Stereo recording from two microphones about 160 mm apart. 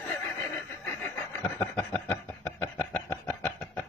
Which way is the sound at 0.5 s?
10° left (ahead or behind).